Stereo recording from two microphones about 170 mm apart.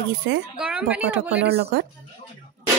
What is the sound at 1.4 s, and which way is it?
Speech, 75° right (ahead or behind).